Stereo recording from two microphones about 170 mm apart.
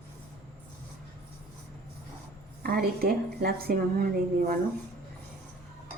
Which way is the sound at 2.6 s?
60° right (ahead or behind).